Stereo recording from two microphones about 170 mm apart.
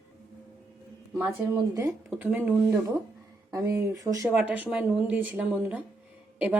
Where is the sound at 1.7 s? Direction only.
15° right (ahead or behind).